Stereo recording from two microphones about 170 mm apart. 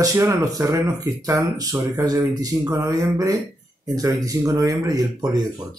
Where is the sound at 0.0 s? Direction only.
20° right (ahead or behind).